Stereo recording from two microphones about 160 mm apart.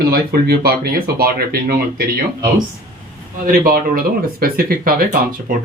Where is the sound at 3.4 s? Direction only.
65° right (ahead or behind).